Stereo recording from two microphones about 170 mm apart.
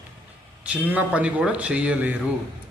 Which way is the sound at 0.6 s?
10° right (ahead or behind).